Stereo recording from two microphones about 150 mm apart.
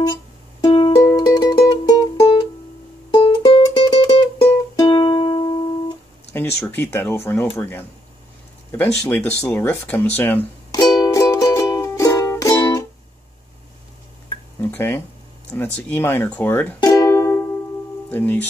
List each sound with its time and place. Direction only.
0.0 s music: 25° left (ahead or behind)
6.6 s speech: 15° left (ahead or behind)
10.7 s music: 25° left (ahead or behind)
14.6 s speech: 15° left (ahead or behind)
16.8 s music: 25° left (ahead or behind)
18.1 s speech: 15° left (ahead or behind)